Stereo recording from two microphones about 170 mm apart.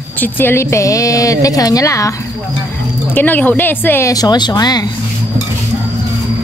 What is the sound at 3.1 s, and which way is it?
Speech, 10° left (ahead or behind).